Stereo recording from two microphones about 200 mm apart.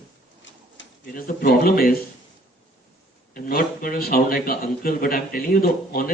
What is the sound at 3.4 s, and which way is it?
A man's voice, 45° left (ahead or behind).